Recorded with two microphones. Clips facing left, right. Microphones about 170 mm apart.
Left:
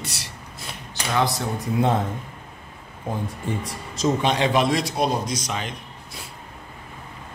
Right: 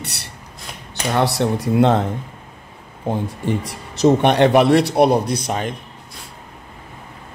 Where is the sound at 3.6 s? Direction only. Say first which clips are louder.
Right 9 dB; 65° right (ahead or behind).